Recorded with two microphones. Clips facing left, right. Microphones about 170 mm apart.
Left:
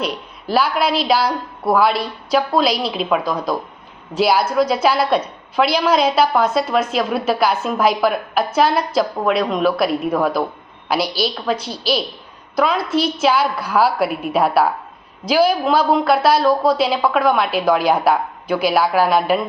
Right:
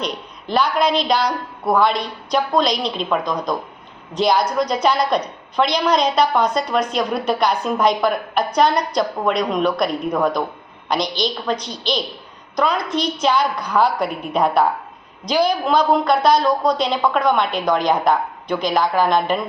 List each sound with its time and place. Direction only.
0.0 s a woman's voice: 5° left (ahead or behind)